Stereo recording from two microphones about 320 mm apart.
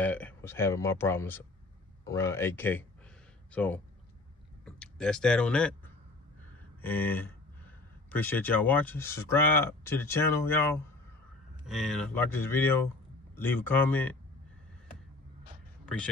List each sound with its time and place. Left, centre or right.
0.0 s speech: centre
6.8 s speech: centre